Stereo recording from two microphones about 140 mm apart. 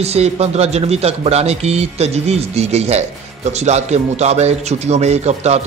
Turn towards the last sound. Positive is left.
turn(degrees=-50)  # may be behind; listen again after turning